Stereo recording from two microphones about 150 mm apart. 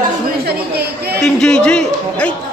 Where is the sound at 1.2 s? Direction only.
5° left (ahead or behind).